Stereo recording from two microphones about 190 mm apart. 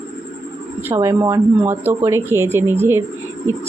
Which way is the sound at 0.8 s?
15° right (ahead or behind).